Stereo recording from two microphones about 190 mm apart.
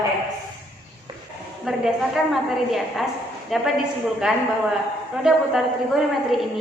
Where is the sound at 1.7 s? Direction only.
5° right (ahead or behind).